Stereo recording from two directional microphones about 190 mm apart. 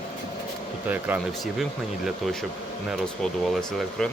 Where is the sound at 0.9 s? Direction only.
10° right (ahead or behind).